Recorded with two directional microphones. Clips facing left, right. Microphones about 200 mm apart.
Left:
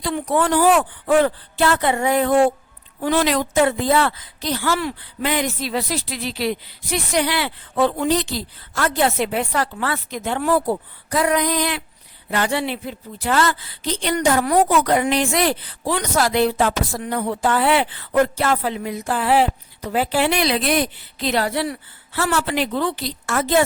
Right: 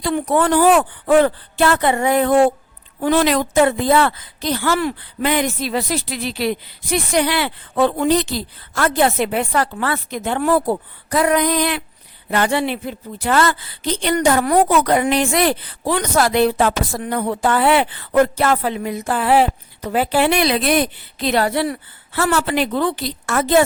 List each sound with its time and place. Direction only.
0.0 s a woman's voice: 55° right (ahead or behind)